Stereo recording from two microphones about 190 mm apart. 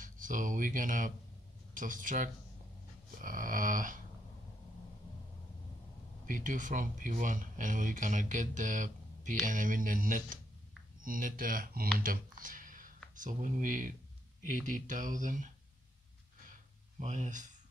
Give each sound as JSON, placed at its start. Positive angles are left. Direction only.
{"t": 0.0, "sound": "speech", "side_deg": -45}
{"t": 6.2, "sound": "speech", "side_deg": -45}
{"t": 12.0, "sound": "a sound", "side_deg": -45}
{"t": 13.1, "sound": "speech", "side_deg": -45}
{"t": 17.0, "sound": "speech", "side_deg": -40}